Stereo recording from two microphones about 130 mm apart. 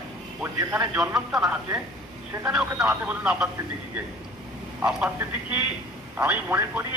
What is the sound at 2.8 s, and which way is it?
Speech, 10° right (ahead or behind).